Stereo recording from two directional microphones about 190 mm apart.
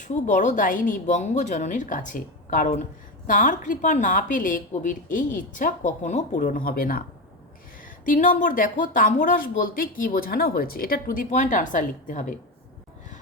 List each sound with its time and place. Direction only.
0.0 s speech: 40° left (ahead or behind)
8.0 s speech: 45° left (ahead or behind)